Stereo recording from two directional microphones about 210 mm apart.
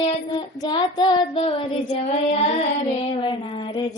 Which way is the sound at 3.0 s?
25° left (ahead or behind).